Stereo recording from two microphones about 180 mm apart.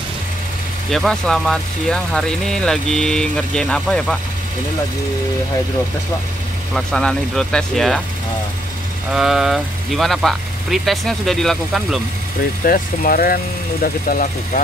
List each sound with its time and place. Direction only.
0.8 s speech: centre (ahead or behind)
6.7 s speech: 5° left (ahead or behind)
9.1 s speech: centre (ahead or behind)
12.6 s speech: 55° left (ahead or behind)